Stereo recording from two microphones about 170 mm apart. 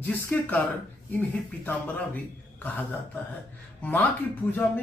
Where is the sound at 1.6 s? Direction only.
10° left (ahead or behind).